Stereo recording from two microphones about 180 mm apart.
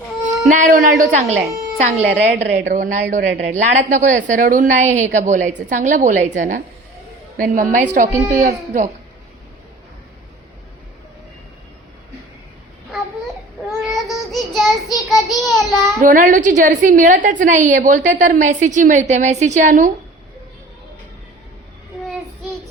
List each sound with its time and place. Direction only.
0.4 s a woman's voice: 45° right (ahead or behind)
13.9 s child singing: centre (ahead or behind)
16.0 s a woman's voice: 45° right (ahead or behind)